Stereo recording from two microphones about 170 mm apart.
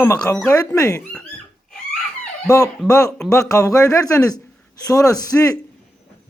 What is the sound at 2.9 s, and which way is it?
Speech, 20° left (ahead or behind).